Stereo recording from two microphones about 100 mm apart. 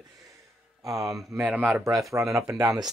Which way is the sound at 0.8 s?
35° right (ahead or behind).